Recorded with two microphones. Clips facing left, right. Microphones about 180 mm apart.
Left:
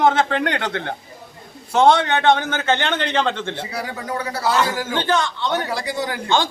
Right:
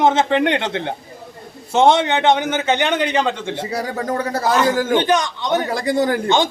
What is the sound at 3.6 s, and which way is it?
Speech, 40° right (ahead or behind).